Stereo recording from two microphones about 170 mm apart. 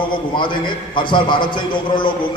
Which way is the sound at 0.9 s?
30° left (ahead or behind).